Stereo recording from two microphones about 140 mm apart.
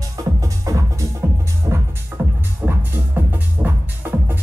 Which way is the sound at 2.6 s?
15° right (ahead or behind).